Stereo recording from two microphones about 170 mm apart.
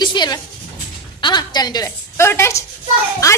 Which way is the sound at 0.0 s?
25° left (ahead or behind).